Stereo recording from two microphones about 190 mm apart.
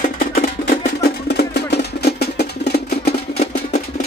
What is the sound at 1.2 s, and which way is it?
Music, 60° left (ahead or behind).